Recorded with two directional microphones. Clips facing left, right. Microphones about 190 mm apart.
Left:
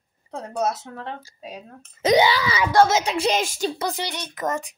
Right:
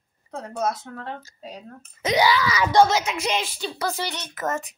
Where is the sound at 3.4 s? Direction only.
45° left (ahead or behind).